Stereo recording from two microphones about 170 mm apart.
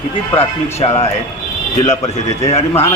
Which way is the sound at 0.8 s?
35° left (ahead or behind).